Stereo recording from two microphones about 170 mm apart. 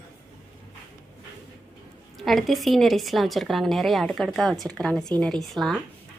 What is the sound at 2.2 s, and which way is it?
A woman's voice, centre (ahead or behind).